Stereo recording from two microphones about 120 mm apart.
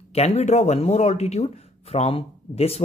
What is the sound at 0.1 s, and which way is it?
Speech, 60° left (ahead or behind).